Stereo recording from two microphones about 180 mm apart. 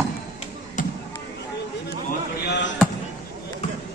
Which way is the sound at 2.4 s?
70° left (ahead or behind).